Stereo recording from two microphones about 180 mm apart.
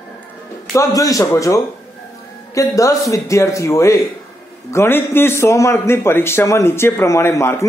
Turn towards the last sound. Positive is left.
turn(degrees=15)  # may be behind; listen again after turning